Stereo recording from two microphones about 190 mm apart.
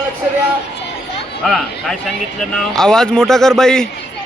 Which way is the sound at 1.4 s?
Centre (ahead or behind).